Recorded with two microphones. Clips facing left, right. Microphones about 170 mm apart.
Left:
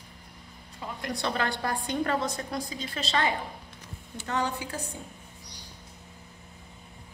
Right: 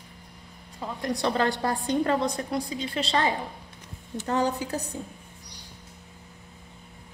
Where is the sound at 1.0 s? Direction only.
35° right (ahead or behind).